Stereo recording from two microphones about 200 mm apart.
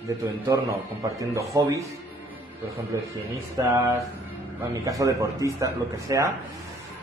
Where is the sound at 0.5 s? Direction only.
15° right (ahead or behind).